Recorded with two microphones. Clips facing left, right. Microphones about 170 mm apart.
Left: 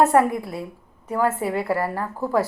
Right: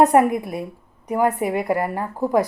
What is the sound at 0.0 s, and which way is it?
A woman's voice, 15° right (ahead or behind).